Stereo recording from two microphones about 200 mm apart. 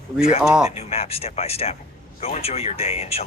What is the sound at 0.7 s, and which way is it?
Speech, 30° left (ahead or behind).